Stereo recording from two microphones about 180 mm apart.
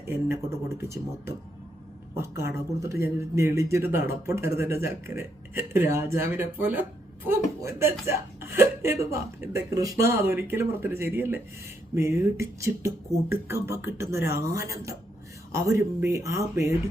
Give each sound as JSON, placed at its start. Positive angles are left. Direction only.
{"t": 0.8, "sound": "speech", "side_deg": -15}